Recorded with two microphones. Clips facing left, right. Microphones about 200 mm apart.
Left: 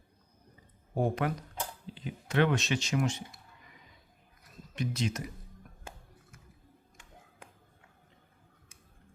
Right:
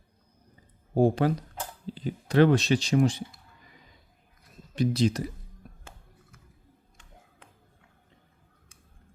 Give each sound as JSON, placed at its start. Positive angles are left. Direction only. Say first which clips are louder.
{"t": 0.9, "sound": "speech", "louder": "right 8 dB", "side_deg": -30}
{"t": 4.7, "sound": "speech", "louder": "right 9 dB", "side_deg": -35}